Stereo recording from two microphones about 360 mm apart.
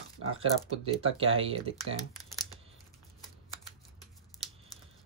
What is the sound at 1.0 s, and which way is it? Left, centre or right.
Speech, centre.